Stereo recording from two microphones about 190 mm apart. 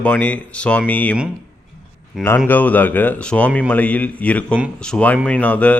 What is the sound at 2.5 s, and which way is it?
A man's voice, 10° left (ahead or behind).